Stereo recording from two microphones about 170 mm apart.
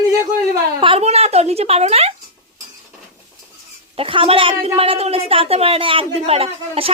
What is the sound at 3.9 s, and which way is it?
A woman's voice, 30° right (ahead or behind).